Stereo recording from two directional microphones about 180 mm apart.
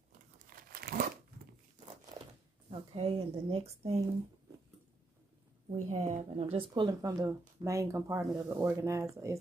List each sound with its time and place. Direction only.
0.6 s crumpling: 55° right (ahead or behind)
2.7 s a woman's voice: 30° right (ahead or behind)
5.7 s speech: 40° right (ahead or behind); by 9.4 s 15° right (ahead or behind)